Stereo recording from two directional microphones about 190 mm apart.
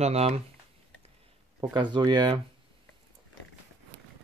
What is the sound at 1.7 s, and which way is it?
Speech, 25° right (ahead or behind).